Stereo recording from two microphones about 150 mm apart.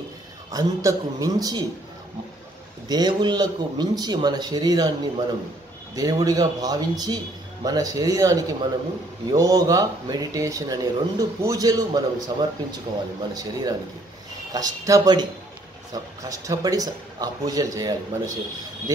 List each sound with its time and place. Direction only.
0.5 s speech: 25° right (ahead or behind)
2.9 s speech: 25° right (ahead or behind)
5.9 s speech: 25° right (ahead or behind)